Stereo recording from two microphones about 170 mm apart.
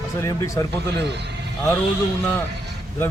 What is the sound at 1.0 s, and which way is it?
Speech, 80° right.